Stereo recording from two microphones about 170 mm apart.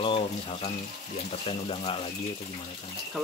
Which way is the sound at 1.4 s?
35° left (ahead or behind).